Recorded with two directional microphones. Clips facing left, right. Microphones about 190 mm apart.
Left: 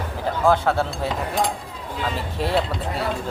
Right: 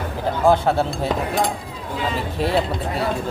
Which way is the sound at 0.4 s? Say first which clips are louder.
Right 2 dB; 15° right (ahead or behind).